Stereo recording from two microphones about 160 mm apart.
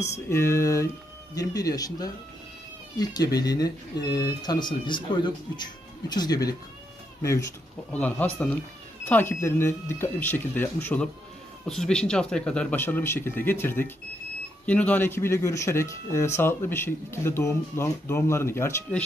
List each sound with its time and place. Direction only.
0.1 s speech: 15° left (ahead or behind)
7.9 s speech: 10° left (ahead or behind)